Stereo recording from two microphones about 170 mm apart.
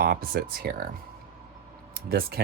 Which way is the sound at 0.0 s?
60° right (ahead or behind).